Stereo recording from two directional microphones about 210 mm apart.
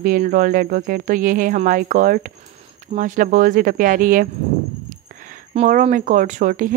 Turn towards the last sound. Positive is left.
turn(degrees=-40)  # may be behind; listen again after turning